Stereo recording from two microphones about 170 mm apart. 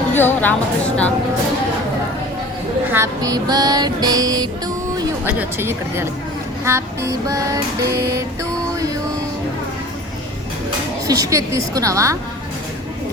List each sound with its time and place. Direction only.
0.1 s speech: 10° left (ahead or behind)
2.9 s music: 20° right (ahead or behind)
5.4 s child singing: 15° right (ahead or behind)
11.0 s a woman's voice: 20° right (ahead or behind)